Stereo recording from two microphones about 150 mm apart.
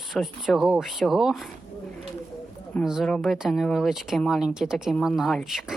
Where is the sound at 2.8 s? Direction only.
Centre (ahead or behind).